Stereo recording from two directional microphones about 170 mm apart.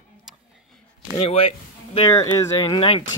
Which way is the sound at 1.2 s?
35° left (ahead or behind).